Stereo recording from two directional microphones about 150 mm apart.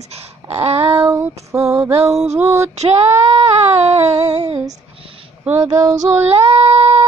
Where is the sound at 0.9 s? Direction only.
15° right (ahead or behind).